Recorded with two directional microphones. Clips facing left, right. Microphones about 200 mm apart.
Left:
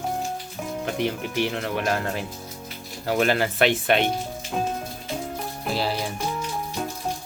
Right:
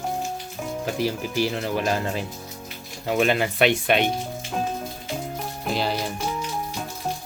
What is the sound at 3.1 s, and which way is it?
Speech, 20° right (ahead or behind).